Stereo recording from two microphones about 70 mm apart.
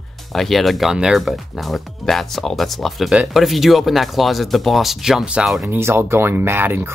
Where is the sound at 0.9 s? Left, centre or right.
Centre.